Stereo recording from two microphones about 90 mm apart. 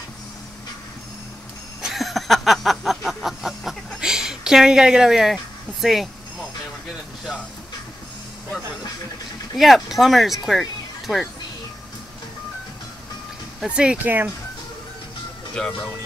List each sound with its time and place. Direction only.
1.8 s a sound: centre (ahead or behind)
9.6 s speech: centre (ahead or behind)
13.7 s speech: 10° right (ahead or behind)